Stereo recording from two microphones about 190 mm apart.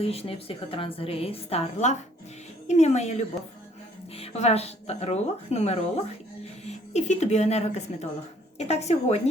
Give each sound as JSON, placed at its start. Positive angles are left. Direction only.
{"t": 0.0, "sound": "a woman's voice", "side_deg": 30}